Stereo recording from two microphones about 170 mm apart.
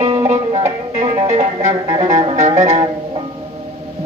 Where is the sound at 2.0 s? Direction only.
45° right (ahead or behind).